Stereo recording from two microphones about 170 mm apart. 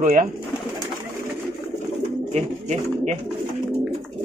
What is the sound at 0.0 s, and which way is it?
Speech, 50° right (ahead or behind).